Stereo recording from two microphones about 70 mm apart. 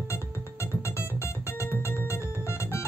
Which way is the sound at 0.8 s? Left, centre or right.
Left.